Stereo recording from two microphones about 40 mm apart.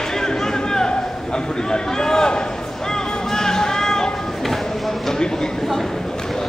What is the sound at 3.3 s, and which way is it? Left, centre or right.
Music, centre.